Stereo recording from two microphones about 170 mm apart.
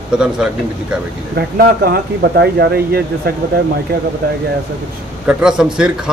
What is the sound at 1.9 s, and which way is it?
Speech, 65° right (ahead or behind).